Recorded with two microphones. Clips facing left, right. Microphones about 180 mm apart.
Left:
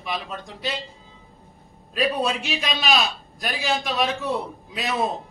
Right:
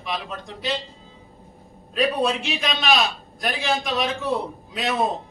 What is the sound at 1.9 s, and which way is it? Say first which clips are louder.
A man's voice: right 2 dB; 5° left (ahead or behind).